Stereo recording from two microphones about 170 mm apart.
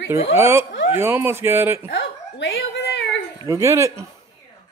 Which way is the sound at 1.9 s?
90° left.